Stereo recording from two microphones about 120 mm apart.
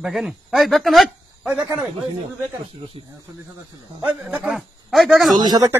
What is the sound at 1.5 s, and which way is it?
Speech, 15° right (ahead or behind).